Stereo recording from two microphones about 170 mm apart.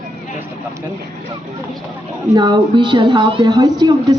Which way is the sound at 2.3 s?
25° right (ahead or behind).